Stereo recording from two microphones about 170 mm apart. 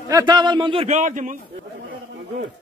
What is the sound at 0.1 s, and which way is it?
Speech, 25° right (ahead or behind).